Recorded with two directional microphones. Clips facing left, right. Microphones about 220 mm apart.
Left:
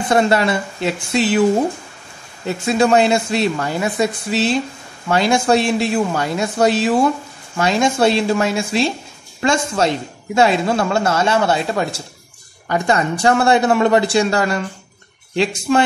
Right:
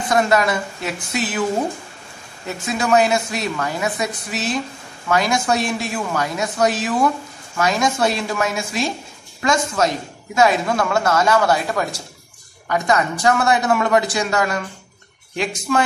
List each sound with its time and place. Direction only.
0.1 s a man's voice: 30° left (ahead or behind)
2.4 s a man's voice: 30° left (ahead or behind)